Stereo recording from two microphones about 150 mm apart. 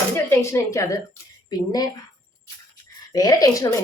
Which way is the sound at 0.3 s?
20° left (ahead or behind).